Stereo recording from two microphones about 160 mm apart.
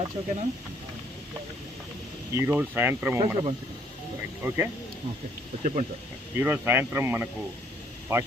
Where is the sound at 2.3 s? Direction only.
15° right (ahead or behind).